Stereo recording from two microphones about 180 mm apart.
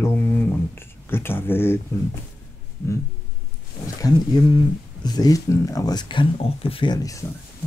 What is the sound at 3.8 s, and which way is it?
Speech, 20° left (ahead or behind).